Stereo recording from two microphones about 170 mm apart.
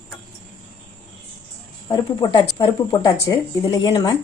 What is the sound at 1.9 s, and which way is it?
Speech, 25° left (ahead or behind).